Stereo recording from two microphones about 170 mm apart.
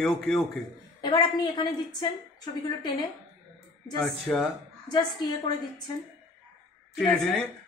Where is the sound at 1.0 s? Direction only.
25° left (ahead or behind).